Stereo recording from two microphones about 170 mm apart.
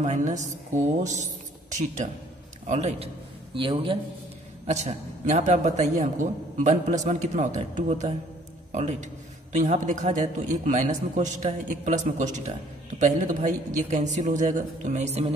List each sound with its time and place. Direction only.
0.0 s a man's voice: 45° right (ahead or behind)
3.5 s a man's voice: 30° right (ahead or behind)
4.6 s a man's voice: 40° right (ahead or behind)